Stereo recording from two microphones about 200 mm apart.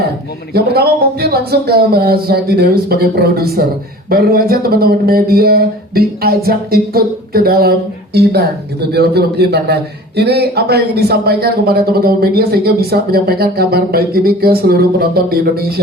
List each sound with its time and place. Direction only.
0.5 s speech: 50° right (ahead or behind)